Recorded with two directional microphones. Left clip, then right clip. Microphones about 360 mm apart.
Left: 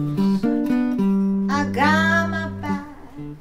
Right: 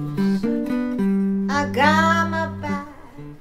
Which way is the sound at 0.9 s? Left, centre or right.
Centre.